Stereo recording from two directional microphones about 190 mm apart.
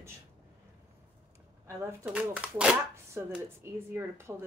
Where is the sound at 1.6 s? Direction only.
10° right (ahead or behind).